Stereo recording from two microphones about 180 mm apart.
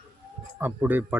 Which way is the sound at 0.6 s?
10° right (ahead or behind).